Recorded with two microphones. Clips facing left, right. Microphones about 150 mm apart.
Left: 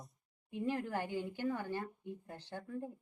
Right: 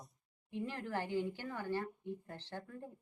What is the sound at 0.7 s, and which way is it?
A woman's voice, 15° left (ahead or behind).